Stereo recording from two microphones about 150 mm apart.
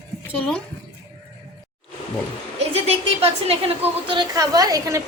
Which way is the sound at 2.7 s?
40° right (ahead or behind).